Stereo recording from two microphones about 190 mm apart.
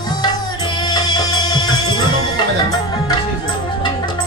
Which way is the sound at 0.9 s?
20° left (ahead or behind).